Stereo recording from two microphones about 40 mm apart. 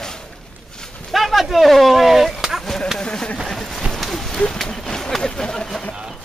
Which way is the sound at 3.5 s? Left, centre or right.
Centre.